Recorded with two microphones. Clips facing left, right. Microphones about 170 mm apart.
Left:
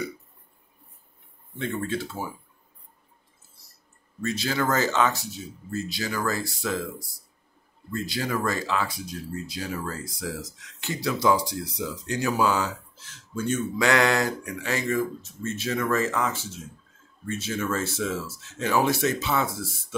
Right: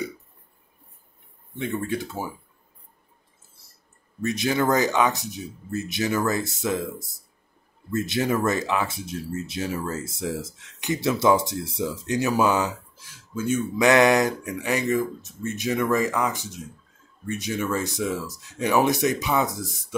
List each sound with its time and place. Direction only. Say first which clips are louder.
1.6 s speech: right 1 dB; 15° right (ahead or behind)
4.2 s speech: right 3 dB; 20° right (ahead or behind)
13.7 s speech: right 5 dB; 20° right (ahead or behind)